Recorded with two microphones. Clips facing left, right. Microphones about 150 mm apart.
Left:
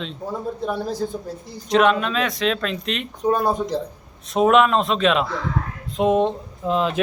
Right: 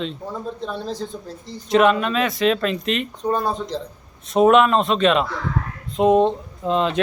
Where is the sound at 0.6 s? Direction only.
10° left (ahead or behind).